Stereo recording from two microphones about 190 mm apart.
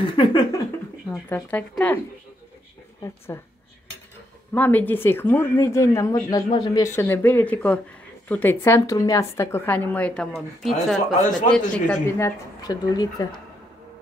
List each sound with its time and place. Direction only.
0.0 s speech: 25° left (ahead or behind)
1.3 s speech: 10° left (ahead or behind)
3.3 s speech: 20° left (ahead or behind)
4.6 s a man's voice: 10° left (ahead or behind)
12.6 s speech: 20° left (ahead or behind)